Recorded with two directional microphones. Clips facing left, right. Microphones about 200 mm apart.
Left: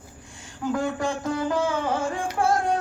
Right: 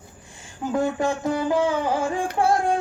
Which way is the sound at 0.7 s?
25° right (ahead or behind).